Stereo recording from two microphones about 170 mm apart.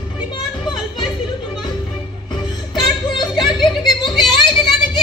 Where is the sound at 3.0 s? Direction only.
25° left (ahead or behind).